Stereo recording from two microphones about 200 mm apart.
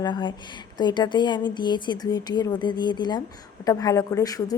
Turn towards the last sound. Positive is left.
turn(degrees=20)  # may be behind; listen again after turning